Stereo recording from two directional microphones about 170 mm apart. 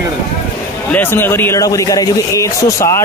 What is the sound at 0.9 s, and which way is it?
A man's voice, 10° left (ahead or behind).